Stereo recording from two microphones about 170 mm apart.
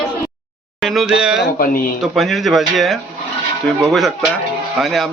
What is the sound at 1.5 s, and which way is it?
Speech, 55° left (ahead or behind).